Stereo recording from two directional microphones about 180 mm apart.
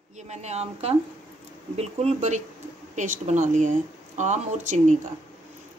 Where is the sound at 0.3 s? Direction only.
40° right (ahead or behind).